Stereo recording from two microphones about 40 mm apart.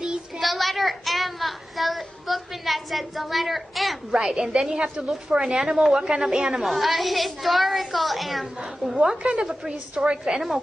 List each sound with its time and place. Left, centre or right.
0.4 s a sound: centre
4.1 s a woman's voice: centre
5.6 s a child's voice: centre
9.0 s a woman's voice: centre